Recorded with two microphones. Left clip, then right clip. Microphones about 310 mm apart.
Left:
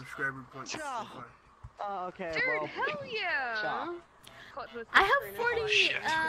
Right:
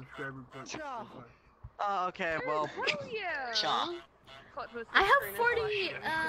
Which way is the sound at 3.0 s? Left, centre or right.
Left.